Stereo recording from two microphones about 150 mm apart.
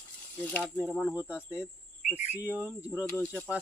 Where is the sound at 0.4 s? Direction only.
10° left (ahead or behind).